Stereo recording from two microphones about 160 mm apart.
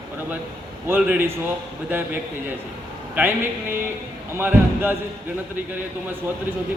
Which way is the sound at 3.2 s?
10° right (ahead or behind).